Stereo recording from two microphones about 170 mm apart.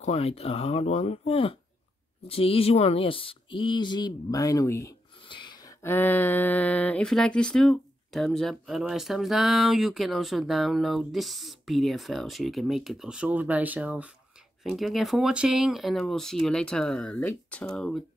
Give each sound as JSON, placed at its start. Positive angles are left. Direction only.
{"t": 0.0, "sound": "speech", "side_deg": 35}
{"t": 5.3, "sound": "a sound", "side_deg": 25}
{"t": 5.8, "sound": "speech", "side_deg": 15}